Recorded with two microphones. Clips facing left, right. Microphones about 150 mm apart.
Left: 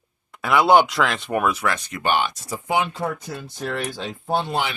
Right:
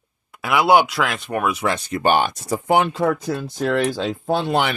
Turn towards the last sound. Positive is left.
turn(degrees=-70)  # may be behind; listen again after turning